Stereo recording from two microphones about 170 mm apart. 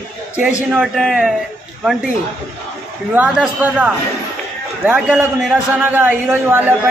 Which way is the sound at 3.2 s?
5° right (ahead or behind).